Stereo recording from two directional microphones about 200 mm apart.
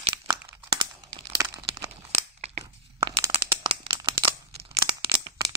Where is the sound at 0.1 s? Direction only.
20° right (ahead or behind).